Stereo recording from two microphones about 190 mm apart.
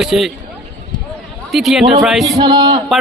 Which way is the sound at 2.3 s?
25° right (ahead or behind).